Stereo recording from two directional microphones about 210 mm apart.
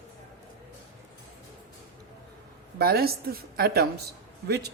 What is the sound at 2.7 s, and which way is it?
A woman's voice, 45° right (ahead or behind).